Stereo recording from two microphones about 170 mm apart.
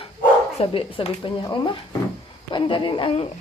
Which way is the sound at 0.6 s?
35° left (ahead or behind).